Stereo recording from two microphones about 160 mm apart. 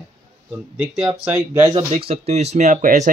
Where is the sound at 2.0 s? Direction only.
40° right (ahead or behind).